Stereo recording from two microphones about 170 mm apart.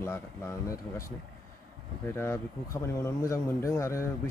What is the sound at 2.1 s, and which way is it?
A man's voice, 15° left (ahead or behind).